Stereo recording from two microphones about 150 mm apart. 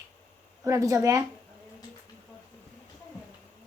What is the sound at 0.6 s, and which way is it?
Speech, 20° right (ahead or behind).